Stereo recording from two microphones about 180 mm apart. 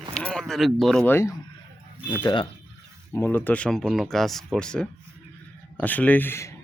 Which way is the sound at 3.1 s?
10° left (ahead or behind).